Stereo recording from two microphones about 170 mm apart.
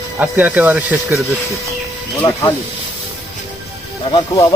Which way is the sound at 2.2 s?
20° left (ahead or behind).